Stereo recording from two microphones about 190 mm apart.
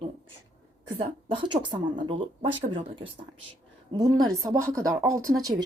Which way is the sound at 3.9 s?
20° right (ahead or behind).